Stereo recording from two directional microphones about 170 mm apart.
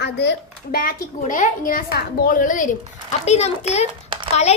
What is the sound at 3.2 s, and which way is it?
Speech, 40° left (ahead or behind).